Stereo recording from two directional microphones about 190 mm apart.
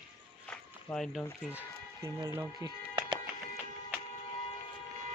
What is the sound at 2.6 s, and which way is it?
Music, 25° right (ahead or behind).